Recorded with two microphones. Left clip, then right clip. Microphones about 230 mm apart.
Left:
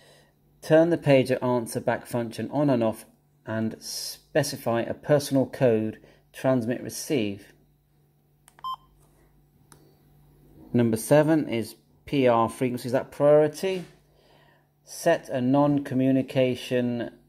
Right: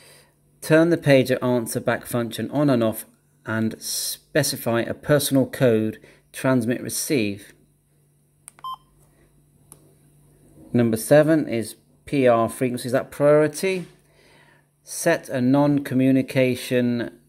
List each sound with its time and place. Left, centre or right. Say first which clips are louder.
0.6 s speech: right 2 dB; right
10.7 s speech: right 4 dB; centre